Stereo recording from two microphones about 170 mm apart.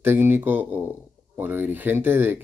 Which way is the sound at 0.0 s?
10° right (ahead or behind).